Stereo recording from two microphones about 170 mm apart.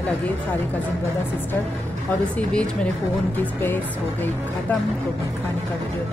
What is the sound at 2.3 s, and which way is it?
A woman's voice, 5° left (ahead or behind).